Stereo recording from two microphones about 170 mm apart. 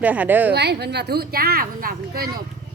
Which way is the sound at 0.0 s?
10° right (ahead or behind).